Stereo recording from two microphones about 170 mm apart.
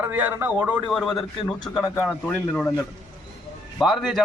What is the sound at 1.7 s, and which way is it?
Speech, 20° left (ahead or behind).